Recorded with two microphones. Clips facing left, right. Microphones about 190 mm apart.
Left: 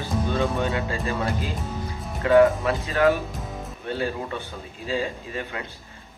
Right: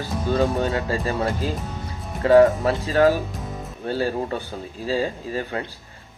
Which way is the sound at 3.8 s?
35° right (ahead or behind).